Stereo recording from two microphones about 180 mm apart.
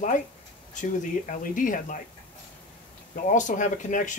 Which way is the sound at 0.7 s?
45° left (ahead or behind).